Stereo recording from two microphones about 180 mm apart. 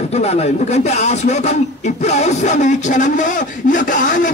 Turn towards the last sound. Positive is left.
turn(degrees=45)  # may be behind; listen again after turning